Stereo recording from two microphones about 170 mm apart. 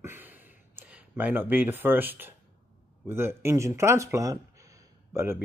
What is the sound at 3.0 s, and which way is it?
Speech, 15° right (ahead or behind).